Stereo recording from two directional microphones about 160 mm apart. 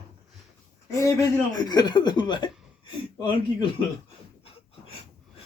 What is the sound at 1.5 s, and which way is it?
Speech, 25° left (ahead or behind).